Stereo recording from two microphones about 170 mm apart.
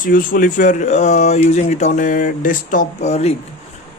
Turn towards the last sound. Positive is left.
turn(degrees=40)  # may be behind; listen again after turning